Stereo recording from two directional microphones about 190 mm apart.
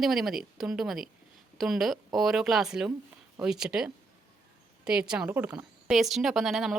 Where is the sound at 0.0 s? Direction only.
Centre (ahead or behind).